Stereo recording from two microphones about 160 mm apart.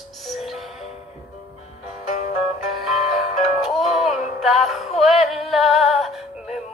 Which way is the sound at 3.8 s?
40° left (ahead or behind).